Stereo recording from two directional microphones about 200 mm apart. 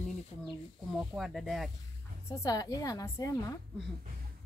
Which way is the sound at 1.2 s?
Centre (ahead or behind).